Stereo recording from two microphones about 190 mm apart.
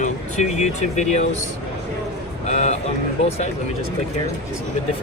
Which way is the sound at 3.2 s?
30° left (ahead or behind).